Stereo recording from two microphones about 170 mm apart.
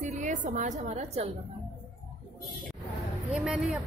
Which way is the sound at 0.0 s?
45° right (ahead or behind).